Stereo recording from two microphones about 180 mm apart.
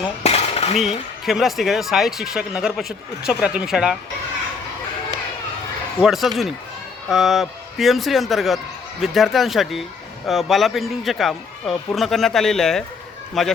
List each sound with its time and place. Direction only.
0.2 s cutlery: 35° left (ahead or behind)
0.8 s a man's voice: centre (ahead or behind)
6.0 s a man's voice: centre (ahead or behind)